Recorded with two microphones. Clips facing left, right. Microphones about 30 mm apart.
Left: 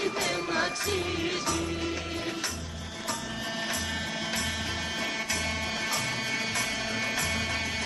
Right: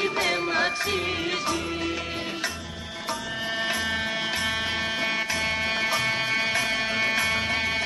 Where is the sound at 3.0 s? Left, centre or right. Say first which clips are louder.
Right 4 dB; right.